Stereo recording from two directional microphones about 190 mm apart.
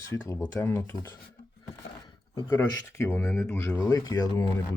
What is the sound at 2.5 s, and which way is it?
Speech, 10° left (ahead or behind).